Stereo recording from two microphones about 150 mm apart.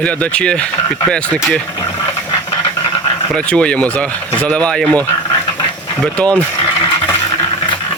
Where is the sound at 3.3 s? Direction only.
10° left (ahead or behind).